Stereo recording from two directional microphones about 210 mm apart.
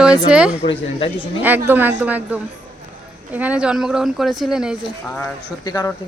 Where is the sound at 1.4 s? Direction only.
10° right (ahead or behind).